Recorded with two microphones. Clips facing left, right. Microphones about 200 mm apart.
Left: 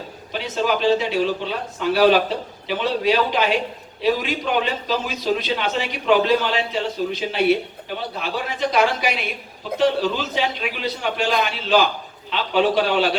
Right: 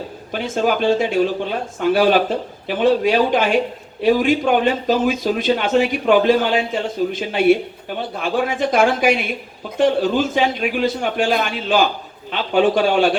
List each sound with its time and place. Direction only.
0.3 s a man's voice: 50° right (ahead or behind)